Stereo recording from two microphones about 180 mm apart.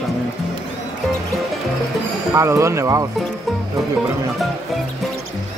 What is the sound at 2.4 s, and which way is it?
Speech, 15° right (ahead or behind).